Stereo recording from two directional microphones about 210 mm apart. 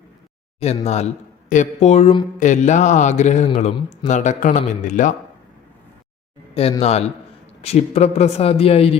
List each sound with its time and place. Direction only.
0.6 s a man's voice: 30° left (ahead or behind)
6.5 s speech: 30° left (ahead or behind)